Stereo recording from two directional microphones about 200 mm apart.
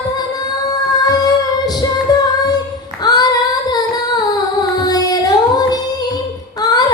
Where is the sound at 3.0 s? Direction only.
20° left (ahead or behind).